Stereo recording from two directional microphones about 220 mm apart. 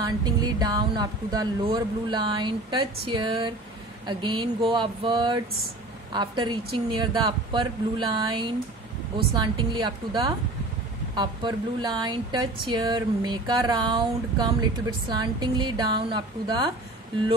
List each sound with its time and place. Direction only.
0.0 s speech: 20° right (ahead or behind)